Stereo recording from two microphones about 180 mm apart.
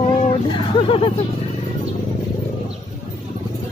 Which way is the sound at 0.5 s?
30° left (ahead or behind).